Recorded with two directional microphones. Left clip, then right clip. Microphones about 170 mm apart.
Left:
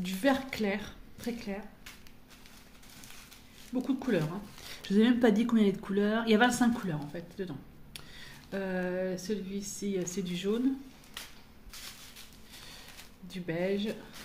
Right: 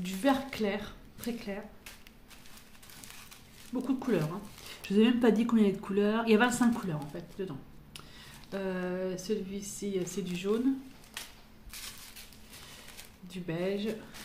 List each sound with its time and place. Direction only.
0.0 s a woman's voice: 25° left (ahead or behind)
3.8 s speech: 20° left (ahead or behind)
13.3 s speech: 25° left (ahead or behind)